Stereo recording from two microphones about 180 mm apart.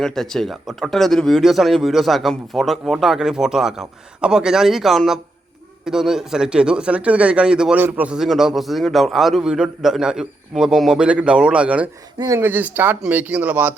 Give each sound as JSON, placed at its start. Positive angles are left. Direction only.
{"t": 0.0, "sound": "speech", "side_deg": 0}